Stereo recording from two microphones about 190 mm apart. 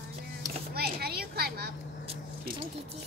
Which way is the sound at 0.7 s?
55° right (ahead or behind).